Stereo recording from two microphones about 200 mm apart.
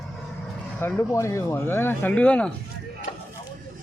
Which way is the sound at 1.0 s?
15° left (ahead or behind).